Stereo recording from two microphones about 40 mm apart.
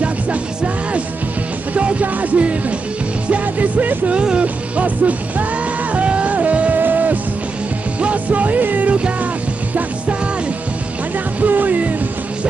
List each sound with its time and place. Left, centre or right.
1.7 s music: right
4.1 s speech: right
4.7 s music: right
6.8 s music: right
8.0 s music: right
8.9 s music: right
11.4 s music: right